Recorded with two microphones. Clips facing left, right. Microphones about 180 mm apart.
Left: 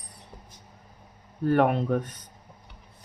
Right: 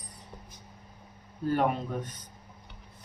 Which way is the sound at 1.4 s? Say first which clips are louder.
Left 5 dB; 65° left (ahead or behind).